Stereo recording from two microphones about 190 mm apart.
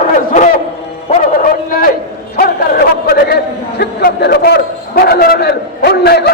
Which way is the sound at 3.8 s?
60° left (ahead or behind).